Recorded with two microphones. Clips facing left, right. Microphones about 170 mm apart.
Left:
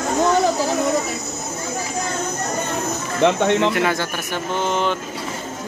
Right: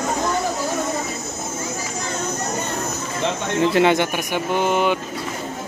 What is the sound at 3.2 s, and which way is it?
Speech, 65° left (ahead or behind).